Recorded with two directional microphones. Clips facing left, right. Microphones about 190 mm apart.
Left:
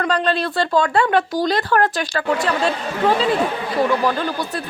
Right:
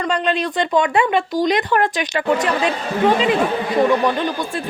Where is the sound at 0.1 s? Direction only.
20° right (ahead or behind).